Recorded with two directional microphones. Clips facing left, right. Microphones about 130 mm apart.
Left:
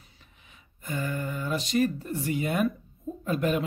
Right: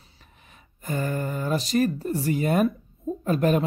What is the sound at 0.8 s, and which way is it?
Speech, 45° right (ahead or behind).